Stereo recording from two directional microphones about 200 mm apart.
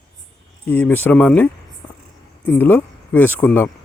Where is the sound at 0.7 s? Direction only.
10° left (ahead or behind).